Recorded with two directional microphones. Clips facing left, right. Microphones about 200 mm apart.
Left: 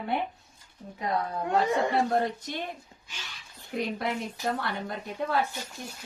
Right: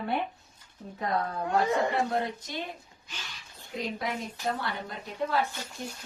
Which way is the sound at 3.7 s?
60° left (ahead or behind).